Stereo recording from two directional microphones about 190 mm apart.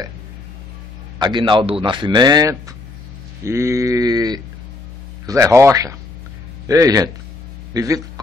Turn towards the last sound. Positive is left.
turn(degrees=-20)  # may be behind; listen again after turning